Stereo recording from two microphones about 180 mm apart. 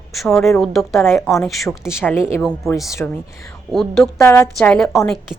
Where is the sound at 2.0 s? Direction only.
15° left (ahead or behind).